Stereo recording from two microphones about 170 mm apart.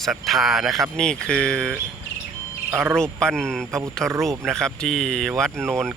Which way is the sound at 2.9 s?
5° left (ahead or behind).